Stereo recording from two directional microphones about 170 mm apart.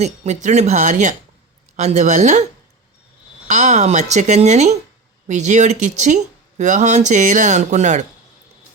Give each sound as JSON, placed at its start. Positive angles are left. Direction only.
{"t": 0.0, "sound": "speech", "side_deg": -40}
{"t": 3.4, "sound": "speech", "side_deg": -45}